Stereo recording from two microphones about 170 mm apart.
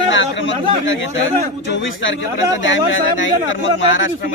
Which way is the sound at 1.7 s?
90° left.